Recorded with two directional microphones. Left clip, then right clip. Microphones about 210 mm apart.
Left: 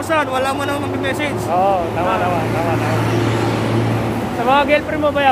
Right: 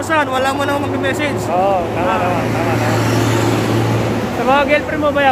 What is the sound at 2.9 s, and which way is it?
Vehicle, 45° right (ahead or behind).